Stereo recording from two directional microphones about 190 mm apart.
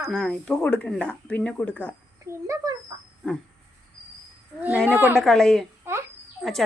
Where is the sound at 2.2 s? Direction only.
15° right (ahead or behind).